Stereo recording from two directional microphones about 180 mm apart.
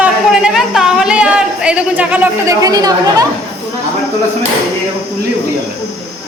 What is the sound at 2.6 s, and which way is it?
Speech, 20° right (ahead or behind).